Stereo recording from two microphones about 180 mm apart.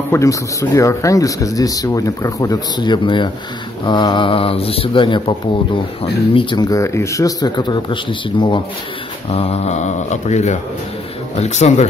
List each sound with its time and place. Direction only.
0.1 s speech: 15° left (ahead or behind)
6.3 s speech: 25° left (ahead or behind); by 11.9 s 40° left (ahead or behind)